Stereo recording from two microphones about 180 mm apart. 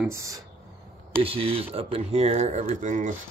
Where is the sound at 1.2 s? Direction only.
30° right (ahead or behind).